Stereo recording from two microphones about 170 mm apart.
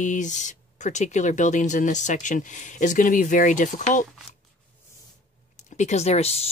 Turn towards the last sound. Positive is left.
turn(degrees=40)  # may be behind; listen again after turning